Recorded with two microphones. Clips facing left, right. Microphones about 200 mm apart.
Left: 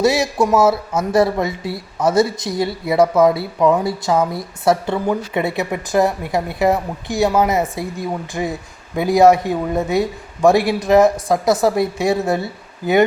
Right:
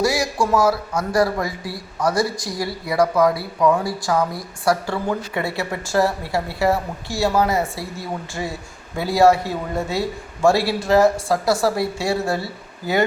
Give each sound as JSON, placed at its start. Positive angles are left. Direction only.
{"t": 0.0, "sound": "speech", "side_deg": 25}